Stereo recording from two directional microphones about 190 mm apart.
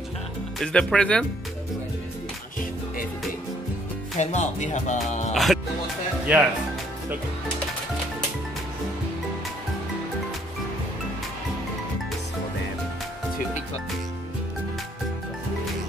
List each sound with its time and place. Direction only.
0.6 s speech: 5° left (ahead or behind)
4.2 s speech: 35° left (ahead or behind)
5.3 s music: centre (ahead or behind)
6.3 s speech: 5° right (ahead or behind)